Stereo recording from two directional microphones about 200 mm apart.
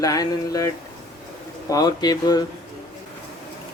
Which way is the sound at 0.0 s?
20° left (ahead or behind).